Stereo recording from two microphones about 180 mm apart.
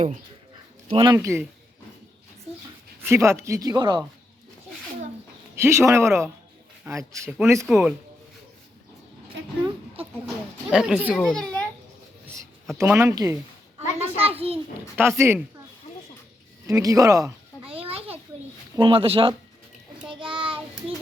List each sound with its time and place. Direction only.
0.9 s speech: 30° right (ahead or behind)
1.1 s speech: 15° right (ahead or behind)
3.0 s speech: 15° right (ahead or behind)
5.5 s speech: 15° right (ahead or behind)
7.7 s speech: centre (ahead or behind)
10.2 s speech: 5° right (ahead or behind)
12.7 s speech: 15° right (ahead or behind)
13.9 s a sound: 35° right (ahead or behind)
14.9 s speech: 15° right (ahead or behind)
16.6 s speech: 20° right (ahead or behind)
17.7 s a sound: 30° right (ahead or behind)
18.8 s speech: 30° right (ahead or behind)
20.1 s child singing: 30° right (ahead or behind)